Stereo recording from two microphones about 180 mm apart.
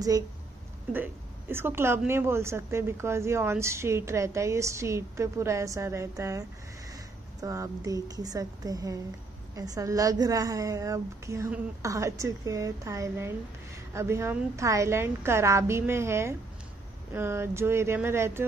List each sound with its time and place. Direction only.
0.9 s a woman's voice: 10° right (ahead or behind)